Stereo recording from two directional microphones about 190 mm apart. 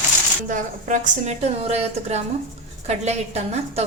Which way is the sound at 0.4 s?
40° right (ahead or behind).